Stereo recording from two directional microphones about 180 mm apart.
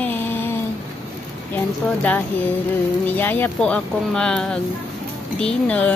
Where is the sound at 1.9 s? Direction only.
10° left (ahead or behind).